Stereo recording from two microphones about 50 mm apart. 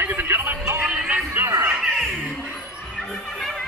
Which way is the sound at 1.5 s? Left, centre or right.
Right.